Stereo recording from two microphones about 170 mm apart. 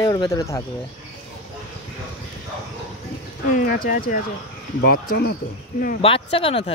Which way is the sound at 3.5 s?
60° left (ahead or behind).